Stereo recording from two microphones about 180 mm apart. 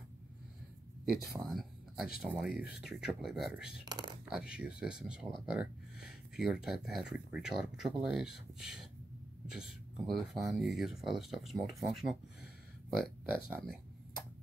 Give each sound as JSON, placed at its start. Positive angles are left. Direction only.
{"t": 1.0, "sound": "speech", "side_deg": 0}
{"t": 3.8, "sound": "speech", "side_deg": -25}
{"t": 4.3, "sound": "speech", "side_deg": -5}